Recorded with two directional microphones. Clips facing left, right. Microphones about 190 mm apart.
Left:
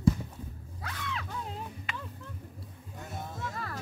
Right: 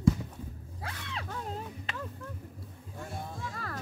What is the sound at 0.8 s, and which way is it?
Roaring cats, 30° right (ahead or behind).